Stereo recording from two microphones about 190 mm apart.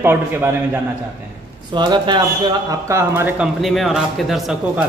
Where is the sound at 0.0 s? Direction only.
10° right (ahead or behind).